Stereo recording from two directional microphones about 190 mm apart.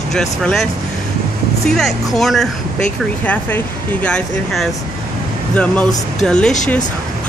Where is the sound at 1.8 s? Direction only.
Centre (ahead or behind).